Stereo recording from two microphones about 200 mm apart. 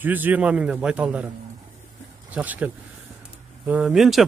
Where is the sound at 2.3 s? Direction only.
5° right (ahead or behind).